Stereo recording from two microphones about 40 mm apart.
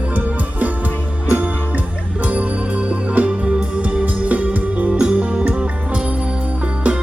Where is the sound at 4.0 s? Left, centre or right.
Right.